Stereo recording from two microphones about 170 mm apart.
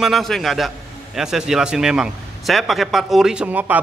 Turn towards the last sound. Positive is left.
turn(degrees=-10)  # may be behind; listen again after turning